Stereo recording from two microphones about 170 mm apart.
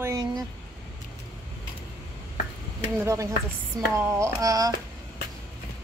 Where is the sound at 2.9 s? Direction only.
15° right (ahead or behind).